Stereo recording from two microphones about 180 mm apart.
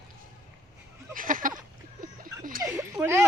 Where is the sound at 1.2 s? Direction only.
50° right (ahead or behind).